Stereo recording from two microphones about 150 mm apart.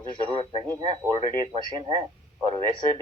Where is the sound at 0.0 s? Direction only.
35° right (ahead or behind).